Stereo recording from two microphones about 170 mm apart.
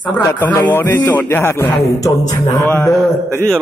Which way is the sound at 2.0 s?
20° left (ahead or behind).